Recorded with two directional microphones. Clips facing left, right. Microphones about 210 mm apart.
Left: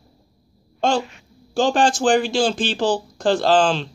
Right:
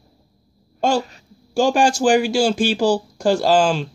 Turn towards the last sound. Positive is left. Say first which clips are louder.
# right 1 dB
turn(degrees=-10)  # may be behind; listen again after turning